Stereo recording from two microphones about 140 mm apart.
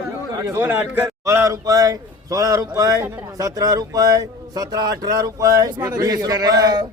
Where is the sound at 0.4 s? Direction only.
15° right (ahead or behind).